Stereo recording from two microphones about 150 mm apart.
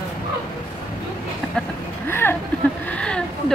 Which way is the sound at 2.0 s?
15° left (ahead or behind).